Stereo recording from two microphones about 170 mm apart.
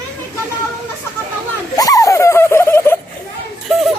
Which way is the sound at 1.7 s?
20° left (ahead or behind).